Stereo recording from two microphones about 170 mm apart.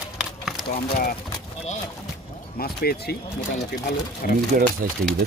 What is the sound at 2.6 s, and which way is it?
Speech, 65° left (ahead or behind).